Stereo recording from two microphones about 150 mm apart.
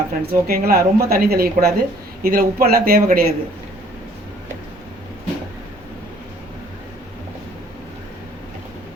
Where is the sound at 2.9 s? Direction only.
90° right.